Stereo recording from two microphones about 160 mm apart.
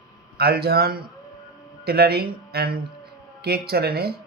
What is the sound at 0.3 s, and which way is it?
Speech, 75° right (ahead or behind).